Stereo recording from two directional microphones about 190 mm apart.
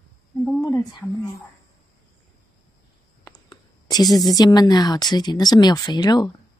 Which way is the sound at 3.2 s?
20° left (ahead or behind).